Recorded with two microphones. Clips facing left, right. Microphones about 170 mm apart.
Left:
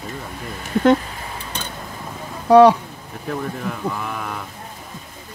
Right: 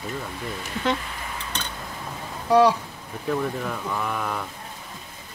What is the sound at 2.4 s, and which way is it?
Speech, 60° left (ahead or behind).